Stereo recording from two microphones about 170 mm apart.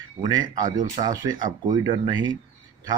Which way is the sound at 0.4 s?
50° right (ahead or behind).